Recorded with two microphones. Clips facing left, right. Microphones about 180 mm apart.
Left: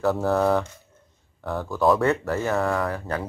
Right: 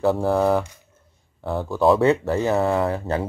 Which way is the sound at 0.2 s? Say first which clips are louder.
Right 2 dB; 10° right (ahead or behind).